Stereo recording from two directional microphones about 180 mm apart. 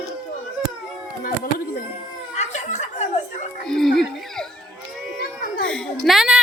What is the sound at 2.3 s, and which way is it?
Snicker, 40° left (ahead or behind).